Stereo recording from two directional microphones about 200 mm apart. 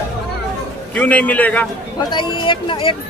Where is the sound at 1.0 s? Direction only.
5° left (ahead or behind).